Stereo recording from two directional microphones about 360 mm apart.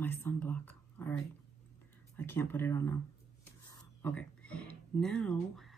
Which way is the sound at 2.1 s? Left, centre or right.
Centre.